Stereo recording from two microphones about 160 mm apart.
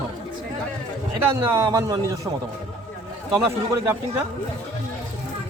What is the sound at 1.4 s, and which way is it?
Speech, 20° right (ahead or behind).